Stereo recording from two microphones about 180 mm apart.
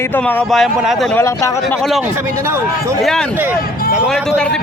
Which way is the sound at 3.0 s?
Centre (ahead or behind).